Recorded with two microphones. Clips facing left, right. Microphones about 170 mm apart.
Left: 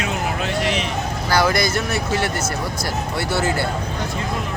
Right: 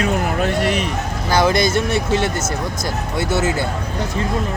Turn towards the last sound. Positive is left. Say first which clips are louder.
# right 2 dB
turn(degrees=-20)  # may be behind; listen again after turning